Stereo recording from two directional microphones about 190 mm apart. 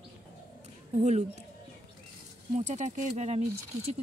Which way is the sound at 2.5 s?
35° right (ahead or behind).